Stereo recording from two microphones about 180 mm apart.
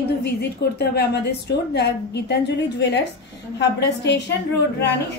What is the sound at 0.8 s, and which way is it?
A woman's voice, 65° left (ahead or behind).